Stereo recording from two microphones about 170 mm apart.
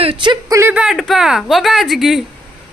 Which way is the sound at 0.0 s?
30° right (ahead or behind).